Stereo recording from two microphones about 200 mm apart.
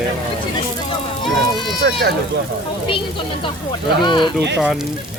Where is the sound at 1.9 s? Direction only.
55° right (ahead or behind).